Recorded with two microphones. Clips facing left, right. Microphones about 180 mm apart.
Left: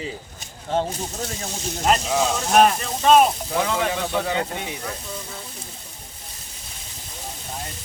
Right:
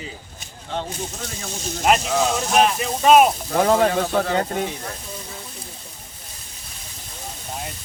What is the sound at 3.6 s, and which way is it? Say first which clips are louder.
Speech: right 7 dB; 45° right (ahead or behind).